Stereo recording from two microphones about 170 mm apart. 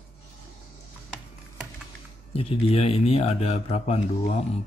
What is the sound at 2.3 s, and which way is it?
A man's voice, 35° left (ahead or behind).